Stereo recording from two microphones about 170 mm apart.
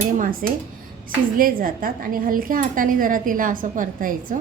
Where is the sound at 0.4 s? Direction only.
55° right (ahead or behind).